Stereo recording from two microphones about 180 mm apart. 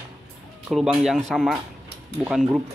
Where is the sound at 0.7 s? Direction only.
5° right (ahead or behind).